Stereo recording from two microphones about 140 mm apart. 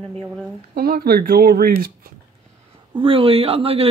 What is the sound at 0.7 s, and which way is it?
Speech, 90° right.